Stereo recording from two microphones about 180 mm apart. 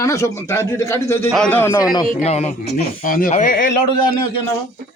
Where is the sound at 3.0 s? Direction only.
50° left (ahead or behind).